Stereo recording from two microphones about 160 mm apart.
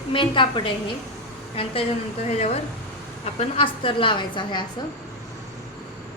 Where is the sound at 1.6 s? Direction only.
35° left (ahead or behind).